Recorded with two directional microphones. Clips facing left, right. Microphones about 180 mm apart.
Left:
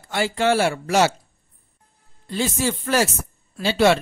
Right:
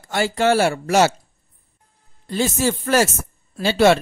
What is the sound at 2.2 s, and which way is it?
Speech, 45° right (ahead or behind).